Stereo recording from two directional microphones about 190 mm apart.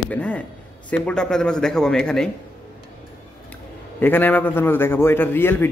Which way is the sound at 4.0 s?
10° left (ahead or behind).